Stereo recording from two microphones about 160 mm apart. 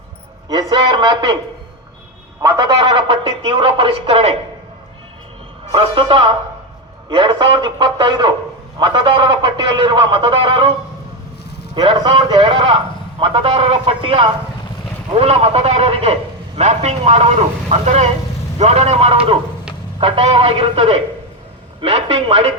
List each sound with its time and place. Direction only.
0.4 s a man's voice: 25° right (ahead or behind)
2.4 s a man's voice: 20° right (ahead or behind); by 4.4 s 35° right (ahead or behind)
5.7 s a man's voice: 30° right (ahead or behind)
11.7 s a man's voice: 30° right (ahead or behind)